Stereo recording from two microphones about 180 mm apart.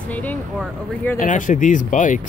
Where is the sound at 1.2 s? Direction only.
45° left (ahead or behind).